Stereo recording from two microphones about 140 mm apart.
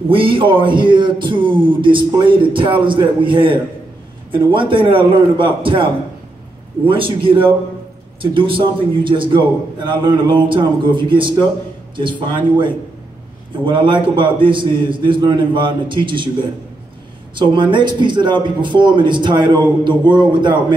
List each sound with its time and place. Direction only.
0.1 s speech: 40° right (ahead or behind)
6.9 s speech: 40° right (ahead or behind)
17.4 s speech: 35° right (ahead or behind)